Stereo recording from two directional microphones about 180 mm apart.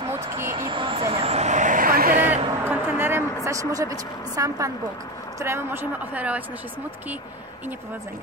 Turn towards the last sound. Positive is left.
turn(degrees=-10)  # may be behind; listen again after turning